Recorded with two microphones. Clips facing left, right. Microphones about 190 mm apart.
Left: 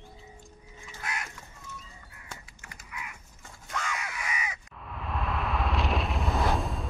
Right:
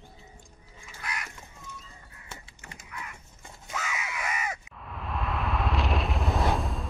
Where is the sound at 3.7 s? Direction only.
5° right (ahead or behind).